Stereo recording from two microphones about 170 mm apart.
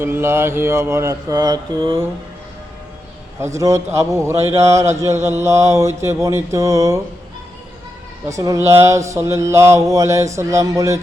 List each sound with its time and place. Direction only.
0.0 s mantra: 15° right (ahead or behind)
3.4 s mantra: 15° right (ahead or behind)
8.3 s mantra: 20° right (ahead or behind)